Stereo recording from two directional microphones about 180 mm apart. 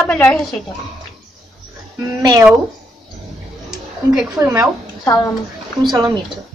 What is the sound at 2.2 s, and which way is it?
Speech, 20° right (ahead or behind).